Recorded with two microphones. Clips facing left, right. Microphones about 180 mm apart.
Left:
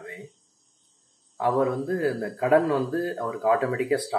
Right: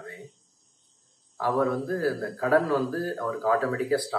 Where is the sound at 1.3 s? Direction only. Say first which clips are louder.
Left 2 dB; 20° left (ahead or behind).